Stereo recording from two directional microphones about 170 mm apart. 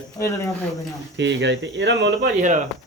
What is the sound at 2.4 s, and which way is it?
Speech, 45° right (ahead or behind).